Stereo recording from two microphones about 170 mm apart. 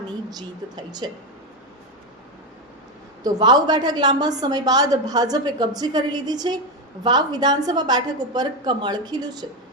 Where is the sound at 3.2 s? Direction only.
25° right (ahead or behind).